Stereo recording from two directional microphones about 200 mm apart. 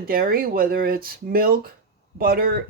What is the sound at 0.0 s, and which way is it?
Speech, 50° right (ahead or behind).